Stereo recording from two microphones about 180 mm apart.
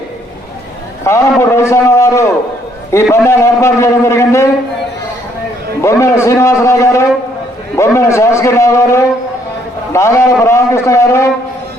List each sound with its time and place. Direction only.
1.0 s a sound: 15° left (ahead or behind)
2.9 s a man's voice: 15° left (ahead or behind)
5.8 s a man's voice: 15° left (ahead or behind)